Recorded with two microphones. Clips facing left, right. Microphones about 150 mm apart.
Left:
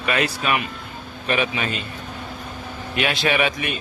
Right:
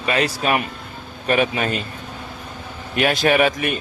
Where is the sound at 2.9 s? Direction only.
45° right (ahead or behind).